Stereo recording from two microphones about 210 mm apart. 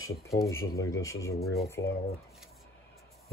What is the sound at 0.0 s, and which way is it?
Speech, 15° left (ahead or behind).